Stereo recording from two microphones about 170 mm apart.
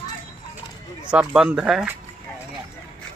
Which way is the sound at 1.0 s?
5° right (ahead or behind).